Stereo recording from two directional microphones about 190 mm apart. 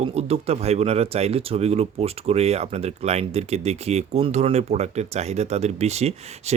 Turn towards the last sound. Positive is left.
turn(degrees=-35)  # may be behind; listen again after turning